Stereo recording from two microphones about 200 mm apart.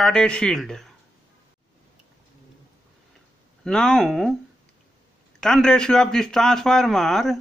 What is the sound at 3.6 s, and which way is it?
Speech, 5° left (ahead or behind).